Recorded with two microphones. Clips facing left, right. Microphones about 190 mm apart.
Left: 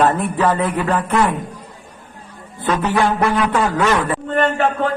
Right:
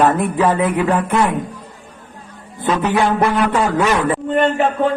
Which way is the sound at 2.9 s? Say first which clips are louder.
Right 1 dB; 15° right (ahead or behind).